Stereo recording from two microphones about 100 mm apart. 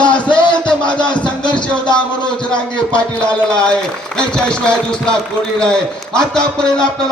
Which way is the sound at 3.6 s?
10° left (ahead or behind).